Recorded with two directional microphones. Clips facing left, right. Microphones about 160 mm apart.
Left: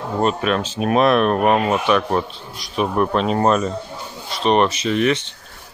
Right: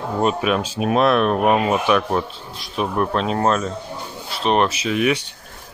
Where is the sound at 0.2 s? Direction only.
5° right (ahead or behind).